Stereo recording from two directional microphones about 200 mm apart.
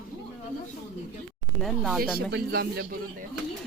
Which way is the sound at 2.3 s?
50° right (ahead or behind).